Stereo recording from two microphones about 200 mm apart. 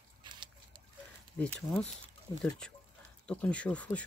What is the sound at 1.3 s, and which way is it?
Speech, 5° left (ahead or behind).